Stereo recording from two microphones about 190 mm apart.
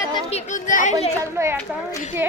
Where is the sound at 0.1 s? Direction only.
35° left (ahead or behind).